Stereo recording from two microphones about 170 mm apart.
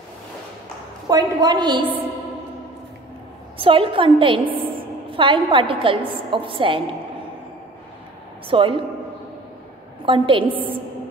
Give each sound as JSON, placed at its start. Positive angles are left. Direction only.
{"t": 1.0, "sound": "a woman's voice", "side_deg": -25}
{"t": 3.5, "sound": "a woman's voice", "side_deg": -30}
{"t": 8.5, "sound": "a woman's voice", "side_deg": -30}
{"t": 10.0, "sound": "a woman's voice", "side_deg": -30}